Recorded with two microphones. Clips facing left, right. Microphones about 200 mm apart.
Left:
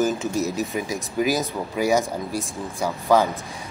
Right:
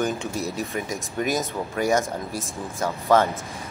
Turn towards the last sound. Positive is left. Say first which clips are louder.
# left 1 dB
turn(degrees=0)  # may be behind; listen again after turning